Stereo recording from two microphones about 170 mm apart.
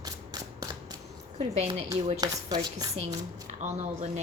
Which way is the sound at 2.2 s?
20° right (ahead or behind).